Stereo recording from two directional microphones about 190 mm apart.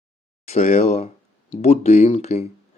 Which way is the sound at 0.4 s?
35° left (ahead or behind).